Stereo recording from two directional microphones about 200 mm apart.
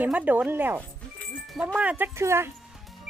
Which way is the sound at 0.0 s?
5° right (ahead or behind).